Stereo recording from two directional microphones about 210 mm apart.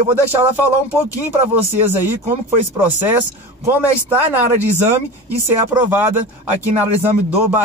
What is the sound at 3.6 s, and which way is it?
Speech, 10° right (ahead or behind).